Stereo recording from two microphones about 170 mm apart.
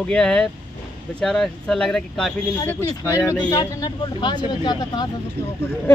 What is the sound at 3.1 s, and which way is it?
Speech, 20° left (ahead or behind).